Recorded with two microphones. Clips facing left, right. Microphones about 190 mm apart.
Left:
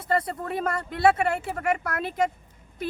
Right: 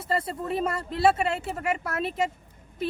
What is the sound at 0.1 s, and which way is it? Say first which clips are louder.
Speech: left 1 dB; 25° right (ahead or behind).